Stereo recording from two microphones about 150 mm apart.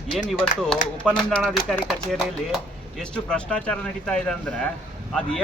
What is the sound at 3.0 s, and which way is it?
A man's voice, 5° left (ahead or behind).